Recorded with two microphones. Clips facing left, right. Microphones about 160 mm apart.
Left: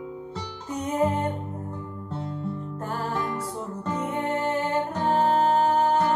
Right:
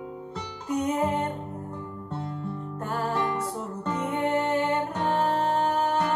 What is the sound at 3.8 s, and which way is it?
Music, 30° left (ahead or behind).